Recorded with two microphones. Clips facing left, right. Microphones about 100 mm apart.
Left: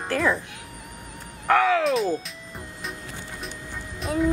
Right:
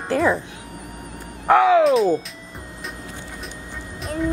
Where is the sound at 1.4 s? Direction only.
20° right (ahead or behind).